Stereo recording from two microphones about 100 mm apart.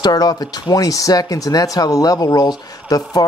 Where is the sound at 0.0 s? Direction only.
40° left (ahead or behind).